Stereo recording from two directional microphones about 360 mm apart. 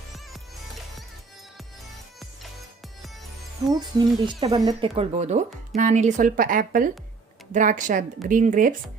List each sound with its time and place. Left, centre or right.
3.7 s speech: centre